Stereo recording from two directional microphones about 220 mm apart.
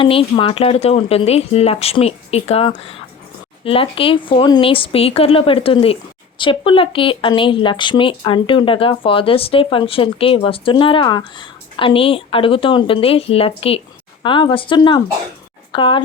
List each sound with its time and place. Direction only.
0.0 s speech: 25° left (ahead or behind)